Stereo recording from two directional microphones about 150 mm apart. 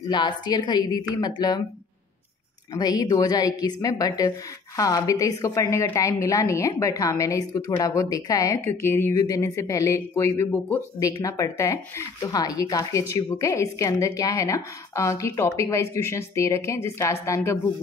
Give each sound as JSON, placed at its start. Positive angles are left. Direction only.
{"t": 0.1, "sound": "a woman's voice", "side_deg": 30}
{"t": 2.7, "sound": "a woman's voice", "side_deg": 25}